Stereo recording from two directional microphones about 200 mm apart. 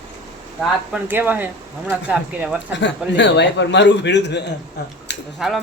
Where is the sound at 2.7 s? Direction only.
60° left (ahead or behind).